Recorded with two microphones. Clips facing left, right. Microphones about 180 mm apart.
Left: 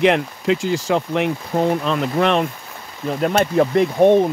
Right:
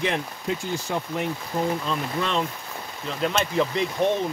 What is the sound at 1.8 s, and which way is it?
Speech, 75° left (ahead or behind).